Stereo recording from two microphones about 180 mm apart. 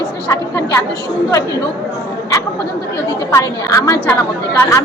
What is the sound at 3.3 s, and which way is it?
Speech, 15° left (ahead or behind).